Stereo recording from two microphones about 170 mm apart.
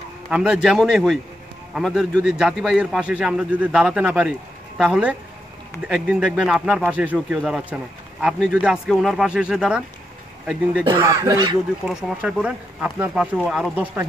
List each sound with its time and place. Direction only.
0.3 s speech: 5° right (ahead or behind)
10.9 s speech: 20° right (ahead or behind)
11.8 s speech: 5° right (ahead or behind)